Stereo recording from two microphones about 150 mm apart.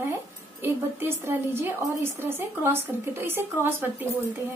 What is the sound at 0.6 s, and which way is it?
A woman's voice, 15° right (ahead or behind).